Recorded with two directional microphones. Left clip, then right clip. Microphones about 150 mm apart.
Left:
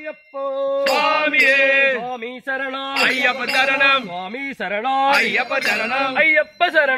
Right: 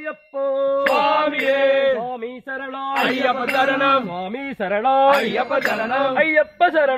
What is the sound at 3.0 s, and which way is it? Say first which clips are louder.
Speech: left 3 dB; 10° left (ahead or behind).